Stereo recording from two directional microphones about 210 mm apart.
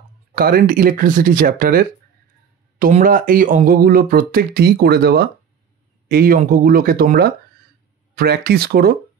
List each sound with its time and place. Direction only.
0.4 s speech: 45° right (ahead or behind)